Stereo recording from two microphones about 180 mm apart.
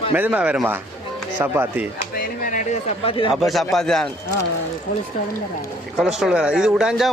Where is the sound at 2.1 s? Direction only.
50° left (ahead or behind).